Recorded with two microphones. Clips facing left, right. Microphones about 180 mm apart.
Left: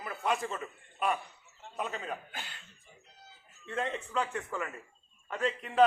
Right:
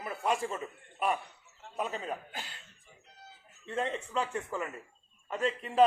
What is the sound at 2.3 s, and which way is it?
Speech, 35° right (ahead or behind).